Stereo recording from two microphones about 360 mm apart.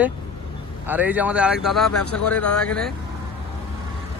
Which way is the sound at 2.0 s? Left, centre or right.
Left.